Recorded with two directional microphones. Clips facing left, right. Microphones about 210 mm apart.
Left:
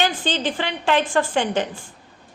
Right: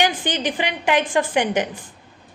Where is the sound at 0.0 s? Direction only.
15° right (ahead or behind).